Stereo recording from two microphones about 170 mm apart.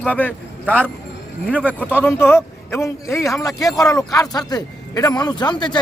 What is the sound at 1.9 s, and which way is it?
A man's voice, 15° left (ahead or behind).